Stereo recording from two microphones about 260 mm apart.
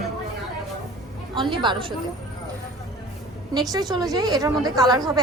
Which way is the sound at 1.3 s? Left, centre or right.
Centre.